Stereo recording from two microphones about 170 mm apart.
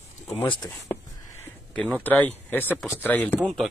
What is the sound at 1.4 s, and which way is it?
Speech, 10° left (ahead or behind).